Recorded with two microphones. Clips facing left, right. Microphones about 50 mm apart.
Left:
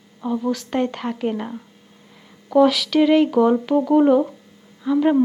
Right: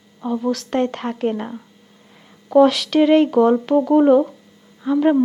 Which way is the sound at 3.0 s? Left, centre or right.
Centre.